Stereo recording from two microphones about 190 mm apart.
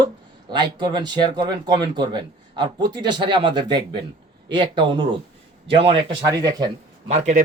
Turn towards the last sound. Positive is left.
turn(degrees=-35)  # may be behind; listen again after turning